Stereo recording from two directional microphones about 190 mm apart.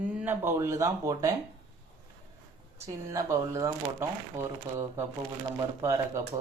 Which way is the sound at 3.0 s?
15° right (ahead or behind).